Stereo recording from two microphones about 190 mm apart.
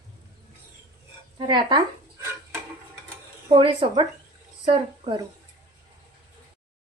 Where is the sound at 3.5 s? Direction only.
25° right (ahead or behind).